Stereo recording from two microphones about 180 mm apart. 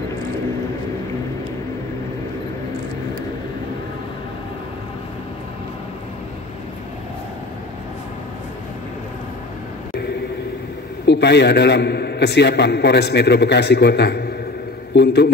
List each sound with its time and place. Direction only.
11.1 s a man's voice: 70° left (ahead or behind)